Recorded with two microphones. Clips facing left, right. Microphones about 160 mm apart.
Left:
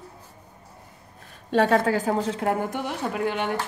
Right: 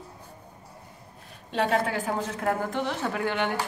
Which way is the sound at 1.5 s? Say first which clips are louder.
Left 5 dB; 40° left (ahead or behind).